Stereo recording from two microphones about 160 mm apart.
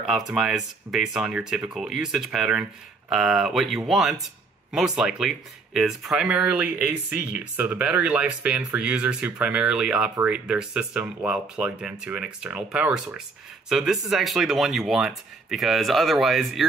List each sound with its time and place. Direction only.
0.3 s speech: 5° right (ahead or behind)